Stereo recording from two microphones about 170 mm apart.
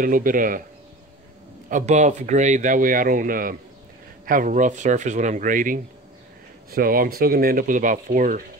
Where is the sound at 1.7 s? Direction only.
45° right (ahead or behind).